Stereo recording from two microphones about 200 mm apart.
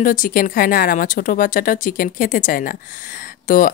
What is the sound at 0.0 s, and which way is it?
Speech, 40° left (ahead or behind).